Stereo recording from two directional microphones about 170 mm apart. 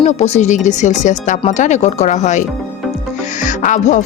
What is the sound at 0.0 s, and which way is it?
Speech, 40° left (ahead or behind).